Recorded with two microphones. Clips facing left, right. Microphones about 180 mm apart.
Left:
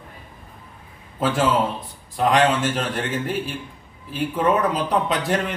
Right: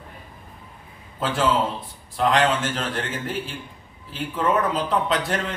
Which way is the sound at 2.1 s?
10° left (ahead or behind).